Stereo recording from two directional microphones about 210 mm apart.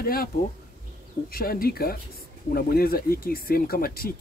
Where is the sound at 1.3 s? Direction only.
45° left (ahead or behind).